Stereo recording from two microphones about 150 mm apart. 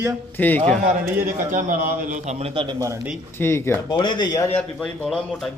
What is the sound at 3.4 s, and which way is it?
Speech, 15° left (ahead or behind).